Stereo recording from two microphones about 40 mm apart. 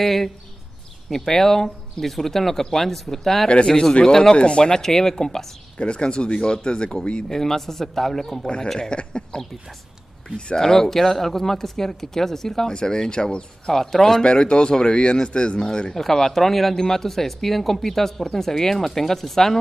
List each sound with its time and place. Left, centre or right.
0.0 s speech: centre
3.4 s speech: left
5.8 s speech: left
7.2 s speech: centre
14.2 s speech: left; by 19.6 s centre